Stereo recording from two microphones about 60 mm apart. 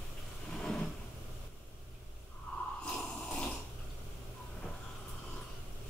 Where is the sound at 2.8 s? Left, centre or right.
Centre.